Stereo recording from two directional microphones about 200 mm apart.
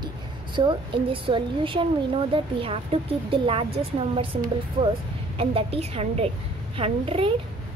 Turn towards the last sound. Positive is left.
turn(degrees=-30)  # may be behind; listen again after turning